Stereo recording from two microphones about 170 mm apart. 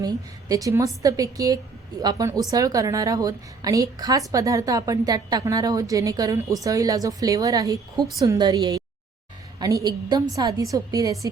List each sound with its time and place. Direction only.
0.0 s a woman's voice: 20° right (ahead or behind)